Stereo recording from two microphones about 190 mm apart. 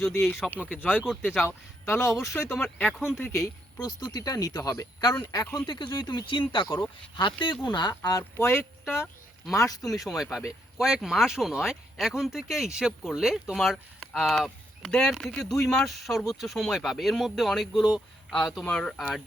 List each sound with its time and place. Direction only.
0.3 s speech: centre (ahead or behind)
0.8 s speech: 10° left (ahead or behind)
1.3 s speech: 5° right (ahead or behind)
1.8 s speech: 15° left (ahead or behind)
3.3 s speech: 20° left (ahead or behind)
8.8 s speech: 5° right (ahead or behind)
9.6 s speech: 20° left (ahead or behind)
9.8 s speech: centre (ahead or behind)